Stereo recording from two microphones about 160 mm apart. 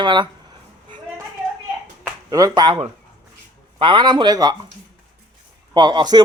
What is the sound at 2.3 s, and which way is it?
A man's voice, 20° right (ahead or behind).